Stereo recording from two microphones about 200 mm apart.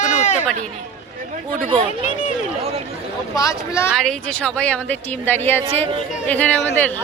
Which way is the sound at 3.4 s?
15° left (ahead or behind).